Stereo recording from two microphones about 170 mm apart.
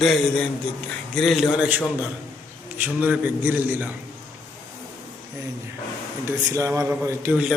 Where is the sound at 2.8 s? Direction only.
10° right (ahead or behind).